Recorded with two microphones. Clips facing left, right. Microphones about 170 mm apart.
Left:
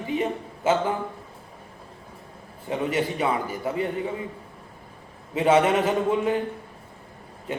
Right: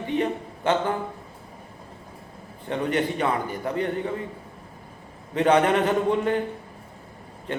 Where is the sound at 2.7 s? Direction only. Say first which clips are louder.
Right 1 dB; 5° left (ahead or behind).